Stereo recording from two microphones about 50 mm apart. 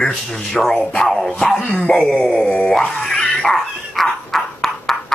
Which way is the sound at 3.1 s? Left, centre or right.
Centre.